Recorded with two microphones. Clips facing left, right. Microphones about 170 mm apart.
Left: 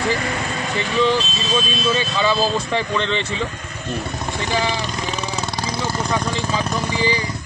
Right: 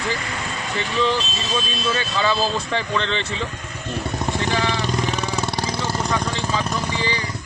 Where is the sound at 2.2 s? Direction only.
5° left (ahead or behind).